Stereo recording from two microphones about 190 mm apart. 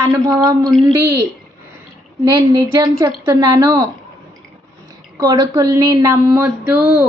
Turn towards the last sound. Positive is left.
turn(degrees=-5)  # may be behind; listen again after turning